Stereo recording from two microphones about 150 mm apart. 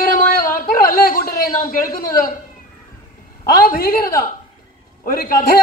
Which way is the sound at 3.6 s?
75° left (ahead or behind).